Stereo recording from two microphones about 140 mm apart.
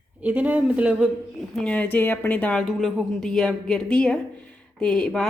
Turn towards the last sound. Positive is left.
turn(degrees=5)  # may be behind; listen again after turning